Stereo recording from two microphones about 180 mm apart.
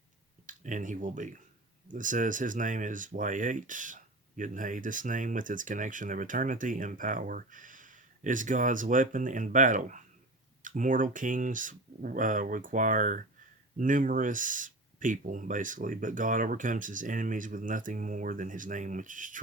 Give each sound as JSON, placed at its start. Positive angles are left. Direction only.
{"t": 0.4, "sound": "speech", "side_deg": -45}